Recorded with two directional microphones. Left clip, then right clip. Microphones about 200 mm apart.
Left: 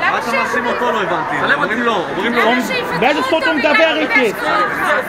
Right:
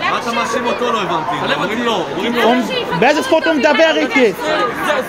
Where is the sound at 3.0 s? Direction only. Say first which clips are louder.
Right 2 dB; 40° right (ahead or behind).